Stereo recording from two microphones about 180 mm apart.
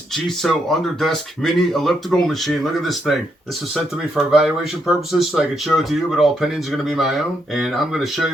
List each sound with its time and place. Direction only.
0.1 s speech: centre (ahead or behind)
4.2 s speech: centre (ahead or behind)